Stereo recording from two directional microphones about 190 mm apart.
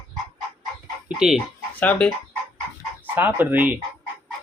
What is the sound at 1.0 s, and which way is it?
Speech, centre (ahead or behind).